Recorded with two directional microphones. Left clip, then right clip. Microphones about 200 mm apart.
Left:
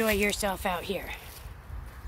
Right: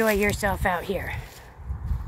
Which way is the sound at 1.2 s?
30° right (ahead or behind).